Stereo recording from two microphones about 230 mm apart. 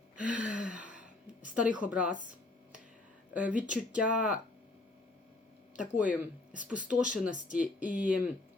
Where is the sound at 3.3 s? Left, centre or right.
Centre.